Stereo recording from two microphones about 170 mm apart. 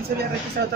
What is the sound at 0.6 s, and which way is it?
Speech, 70° right (ahead or behind).